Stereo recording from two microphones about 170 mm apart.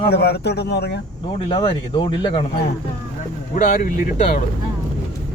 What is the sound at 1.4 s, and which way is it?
Speech, 30° left (ahead or behind).